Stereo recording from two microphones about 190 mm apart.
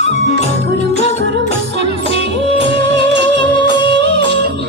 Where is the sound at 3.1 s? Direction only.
65° right (ahead or behind).